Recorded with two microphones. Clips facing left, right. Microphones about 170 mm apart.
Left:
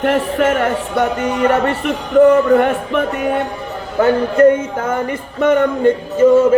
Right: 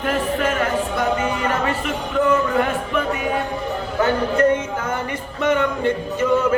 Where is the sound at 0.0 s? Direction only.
65° left (ahead or behind).